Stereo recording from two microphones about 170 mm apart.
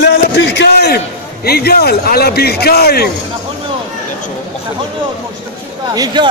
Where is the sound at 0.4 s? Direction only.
75° left (ahead or behind).